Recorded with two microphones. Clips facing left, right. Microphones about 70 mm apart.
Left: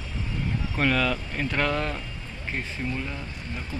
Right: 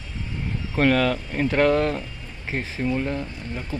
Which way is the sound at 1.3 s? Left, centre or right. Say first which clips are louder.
Right 7 dB; right.